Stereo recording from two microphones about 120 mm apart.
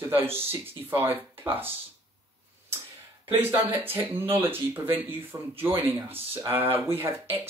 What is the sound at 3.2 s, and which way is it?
Speech, 15° right (ahead or behind).